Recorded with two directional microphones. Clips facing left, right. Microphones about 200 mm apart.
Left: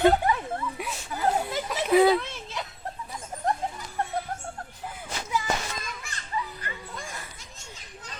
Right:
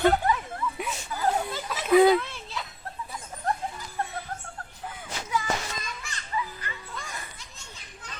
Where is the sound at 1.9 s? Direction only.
5° left (ahead or behind).